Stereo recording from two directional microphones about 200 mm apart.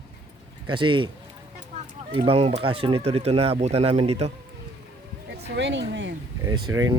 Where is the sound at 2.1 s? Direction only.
30° right (ahead or behind).